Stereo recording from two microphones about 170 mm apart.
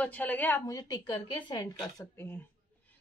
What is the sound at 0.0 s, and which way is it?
A woman's voice, 10° left (ahead or behind).